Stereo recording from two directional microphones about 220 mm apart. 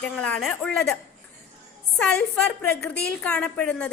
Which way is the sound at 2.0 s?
5° left (ahead or behind).